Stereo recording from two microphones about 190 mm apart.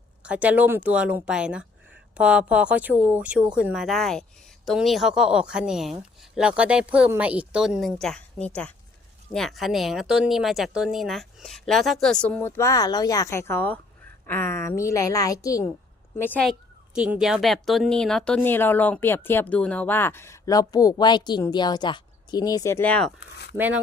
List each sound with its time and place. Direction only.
0.2 s a woman's voice: 5° right (ahead or behind)
23.6 s speech: 10° right (ahead or behind)